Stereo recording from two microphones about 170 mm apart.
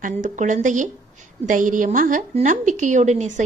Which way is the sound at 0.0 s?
45° right (ahead or behind).